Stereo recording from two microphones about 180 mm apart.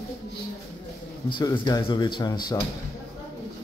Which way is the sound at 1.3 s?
25° left (ahead or behind).